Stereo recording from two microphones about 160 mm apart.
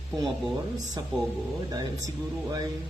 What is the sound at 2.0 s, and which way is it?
Speech, 20° right (ahead or behind).